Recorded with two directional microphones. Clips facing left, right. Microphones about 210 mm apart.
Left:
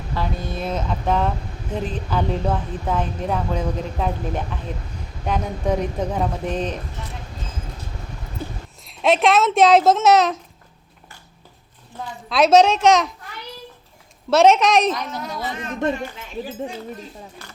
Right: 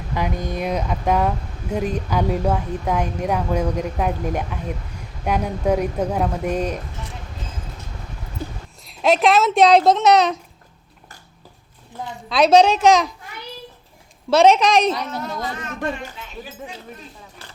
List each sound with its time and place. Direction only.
0.1 s a woman's voice: 15° right (ahead or behind)
8.8 s speech: centre (ahead or behind)
12.3 s speech: centre (ahead or behind)
14.3 s speech: centre (ahead or behind)
15.5 s speech: 20° left (ahead or behind)